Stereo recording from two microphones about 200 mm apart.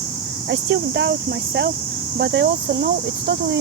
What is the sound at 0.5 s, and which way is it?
Speech, 65° right (ahead or behind).